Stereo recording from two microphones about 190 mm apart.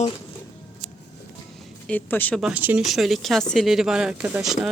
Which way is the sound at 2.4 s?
5° right (ahead or behind).